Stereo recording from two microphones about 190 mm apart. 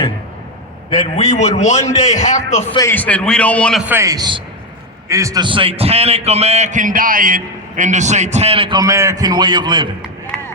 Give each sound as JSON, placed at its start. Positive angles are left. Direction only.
{"t": 0.9, "sound": "a man's voice", "side_deg": 35}
{"t": 2.7, "sound": "a man's voice", "side_deg": 10}
{"t": 3.8, "sound": "a man's voice", "side_deg": -15}